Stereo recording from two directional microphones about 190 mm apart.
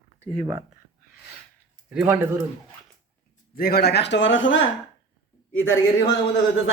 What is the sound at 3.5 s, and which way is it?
Speech, 50° left (ahead or behind).